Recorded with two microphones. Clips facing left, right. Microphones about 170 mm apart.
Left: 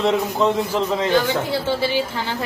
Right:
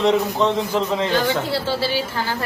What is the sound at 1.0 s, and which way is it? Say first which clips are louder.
Speech: left 1 dB; 15° left (ahead or behind).